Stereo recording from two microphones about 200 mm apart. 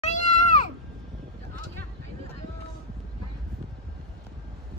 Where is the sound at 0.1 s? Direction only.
40° left (ahead or behind).